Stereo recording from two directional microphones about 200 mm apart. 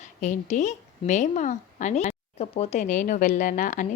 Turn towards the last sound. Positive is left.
turn(degrees=40)  # may be behind; listen again after turning